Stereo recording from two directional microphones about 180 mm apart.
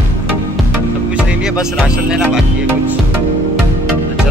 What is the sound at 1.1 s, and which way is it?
Speech, 5° right (ahead or behind).